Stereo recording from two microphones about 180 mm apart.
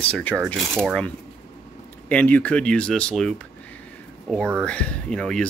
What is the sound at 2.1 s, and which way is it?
Speech, 10° left (ahead or behind).